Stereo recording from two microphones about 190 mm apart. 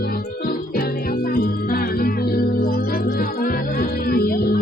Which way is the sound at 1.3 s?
50° left (ahead or behind).